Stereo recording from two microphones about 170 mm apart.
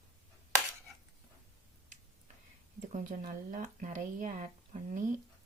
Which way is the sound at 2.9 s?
50° right (ahead or behind).